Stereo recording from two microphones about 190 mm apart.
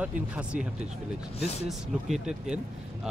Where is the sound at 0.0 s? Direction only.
5° right (ahead or behind).